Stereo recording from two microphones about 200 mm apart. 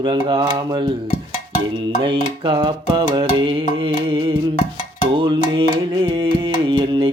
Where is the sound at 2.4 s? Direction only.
25° right (ahead or behind).